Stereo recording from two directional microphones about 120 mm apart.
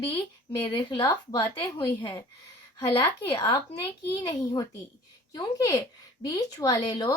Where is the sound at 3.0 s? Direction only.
40° left (ahead or behind).